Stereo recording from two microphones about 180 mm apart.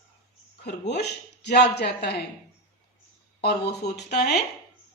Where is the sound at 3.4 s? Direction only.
65° left (ahead or behind).